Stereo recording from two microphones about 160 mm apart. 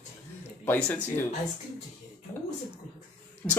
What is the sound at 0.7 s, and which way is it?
Speech, 10° left (ahead or behind).